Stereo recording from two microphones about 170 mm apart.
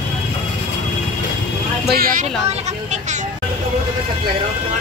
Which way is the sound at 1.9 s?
60° right (ahead or behind).